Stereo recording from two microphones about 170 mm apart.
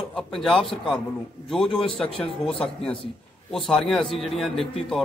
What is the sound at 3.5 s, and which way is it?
A man's voice, centre (ahead or behind).